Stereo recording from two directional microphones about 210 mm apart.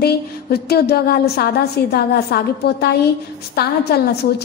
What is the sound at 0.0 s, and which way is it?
A woman's voice, 50° left (ahead or behind).